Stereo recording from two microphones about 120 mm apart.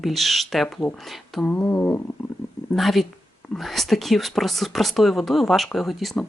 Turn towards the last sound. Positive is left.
turn(degrees=0)  # may be behind; listen again after turning